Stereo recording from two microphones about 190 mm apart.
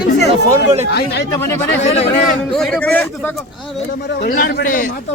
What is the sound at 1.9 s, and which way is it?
Speech, 35° left (ahead or behind).